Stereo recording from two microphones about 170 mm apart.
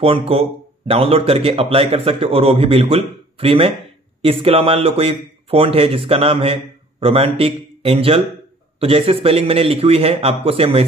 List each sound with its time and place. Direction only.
0.0 s speech: 35° right (ahead or behind)